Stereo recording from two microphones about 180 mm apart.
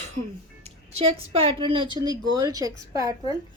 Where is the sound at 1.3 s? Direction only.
30° right (ahead or behind).